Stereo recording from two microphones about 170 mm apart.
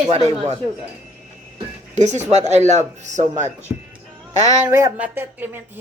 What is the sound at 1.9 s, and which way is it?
Speech, 45° right (ahead or behind).